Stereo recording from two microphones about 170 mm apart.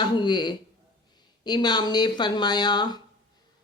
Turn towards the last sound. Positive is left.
turn(degrees=25)  # may be behind; listen again after turning